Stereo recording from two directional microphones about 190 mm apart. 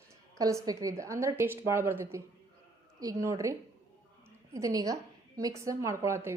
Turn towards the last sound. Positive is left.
turn(degrees=-15)  # may be behind; listen again after turning